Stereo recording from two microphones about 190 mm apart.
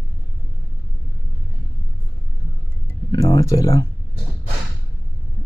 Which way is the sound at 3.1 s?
20° left (ahead or behind).